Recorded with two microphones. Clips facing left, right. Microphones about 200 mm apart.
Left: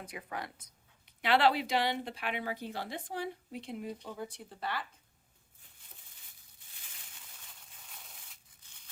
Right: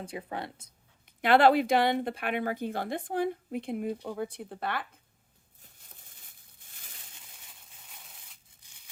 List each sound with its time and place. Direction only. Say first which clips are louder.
0.0 s speech: right 5 dB; 30° right (ahead or behind)
1.0 s speech: right 6 dB; 50° right (ahead or behind)
8.6 s a sound: right 1 dB; 15° right (ahead or behind)